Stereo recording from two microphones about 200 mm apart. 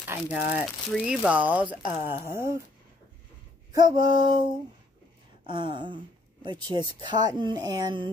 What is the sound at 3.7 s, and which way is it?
Speech, 20° right (ahead or behind).